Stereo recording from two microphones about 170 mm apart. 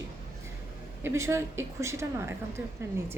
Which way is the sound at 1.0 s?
15° right (ahead or behind).